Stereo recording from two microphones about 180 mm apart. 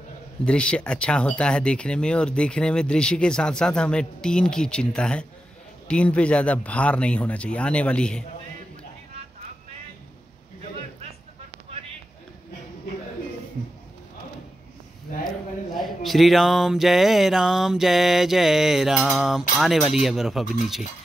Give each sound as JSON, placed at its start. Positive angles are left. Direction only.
{"t": 0.5, "sound": "speech", "side_deg": 5}
{"t": 15.7, "sound": "speech", "side_deg": 0}